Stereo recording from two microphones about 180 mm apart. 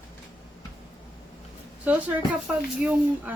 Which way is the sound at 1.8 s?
10° right (ahead or behind).